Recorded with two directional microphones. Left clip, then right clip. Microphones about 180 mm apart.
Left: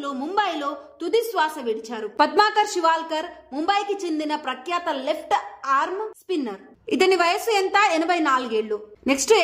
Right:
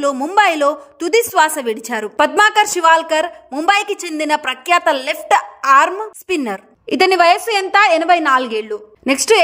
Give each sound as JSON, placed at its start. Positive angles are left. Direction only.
{"t": 0.0, "sound": "a woman's voice", "side_deg": -30}